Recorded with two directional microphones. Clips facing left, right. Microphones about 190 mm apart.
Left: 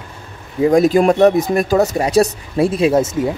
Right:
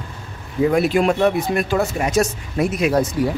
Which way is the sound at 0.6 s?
40° left (ahead or behind).